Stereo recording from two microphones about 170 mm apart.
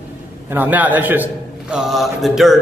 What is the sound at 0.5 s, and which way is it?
A man's voice, 10° right (ahead or behind).